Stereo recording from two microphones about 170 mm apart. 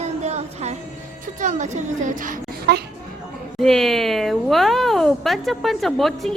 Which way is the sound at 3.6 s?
Centre (ahead or behind).